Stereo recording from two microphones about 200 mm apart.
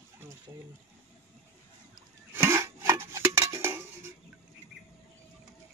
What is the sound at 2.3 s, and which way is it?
Dishes, 10° right (ahead or behind).